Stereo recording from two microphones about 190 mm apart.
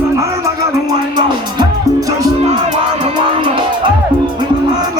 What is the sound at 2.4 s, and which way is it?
Music, 35° right (ahead or behind).